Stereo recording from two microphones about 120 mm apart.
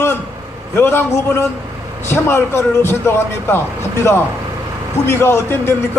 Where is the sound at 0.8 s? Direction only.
20° left (ahead or behind).